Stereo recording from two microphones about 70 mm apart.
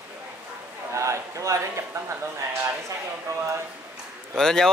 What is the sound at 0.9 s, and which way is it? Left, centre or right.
Speech, right.